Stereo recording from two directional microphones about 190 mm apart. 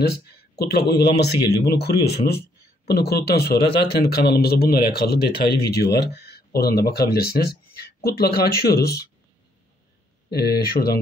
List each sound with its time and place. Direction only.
0.0 s speech: 55° left (ahead or behind)
10.3 s speech: 55° left (ahead or behind)